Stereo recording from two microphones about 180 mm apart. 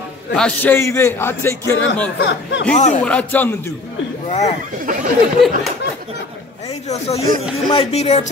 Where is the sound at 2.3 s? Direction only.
75° left (ahead or behind).